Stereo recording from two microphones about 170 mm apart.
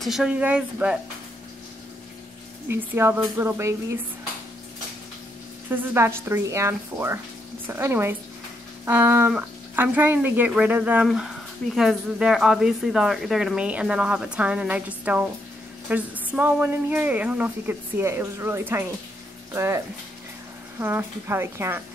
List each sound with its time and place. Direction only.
0.0 s a woman's voice: 5° right (ahead or behind)
2.7 s a woman's voice: 15° right (ahead or behind)
5.7 s a woman's voice: 15° right (ahead or behind)
20.8 s a woman's voice: 15° right (ahead or behind)